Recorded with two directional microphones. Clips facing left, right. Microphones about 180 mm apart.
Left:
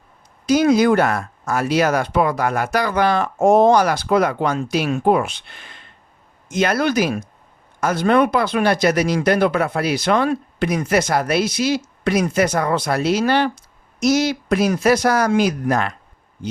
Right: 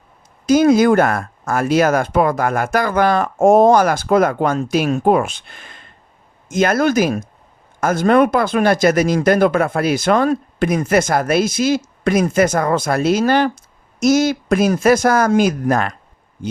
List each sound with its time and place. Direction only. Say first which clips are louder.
0.4 s speech: right 3 dB; 45° right (ahead or behind)